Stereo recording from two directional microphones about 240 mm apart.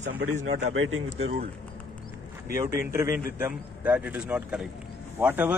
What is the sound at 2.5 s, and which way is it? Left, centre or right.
A man's voice, centre.